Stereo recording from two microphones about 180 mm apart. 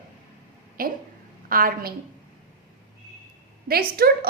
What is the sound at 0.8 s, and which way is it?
A woman's voice, 55° right (ahead or behind).